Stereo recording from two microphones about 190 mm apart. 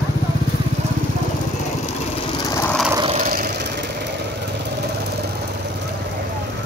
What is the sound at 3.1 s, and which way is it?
Vehicle, 45° right (ahead or behind).